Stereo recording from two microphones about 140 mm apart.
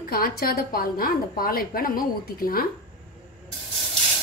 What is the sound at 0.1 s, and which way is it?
A woman's voice, 90° left.